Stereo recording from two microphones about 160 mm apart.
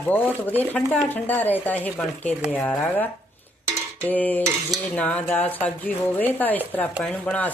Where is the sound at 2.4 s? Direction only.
5° right (ahead or behind).